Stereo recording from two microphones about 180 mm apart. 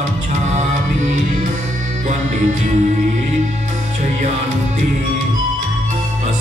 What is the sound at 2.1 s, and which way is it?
Music, 45° right (ahead or behind).